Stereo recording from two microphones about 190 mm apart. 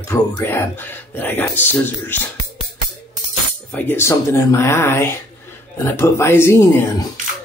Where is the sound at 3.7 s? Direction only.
10° left (ahead or behind).